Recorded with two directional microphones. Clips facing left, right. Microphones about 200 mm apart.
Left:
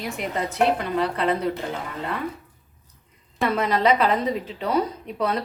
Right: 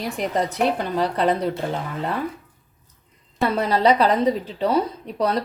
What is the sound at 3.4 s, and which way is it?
A woman's voice, 30° right (ahead or behind).